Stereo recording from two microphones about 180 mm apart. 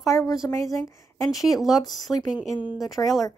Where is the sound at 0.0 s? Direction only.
15° left (ahead or behind).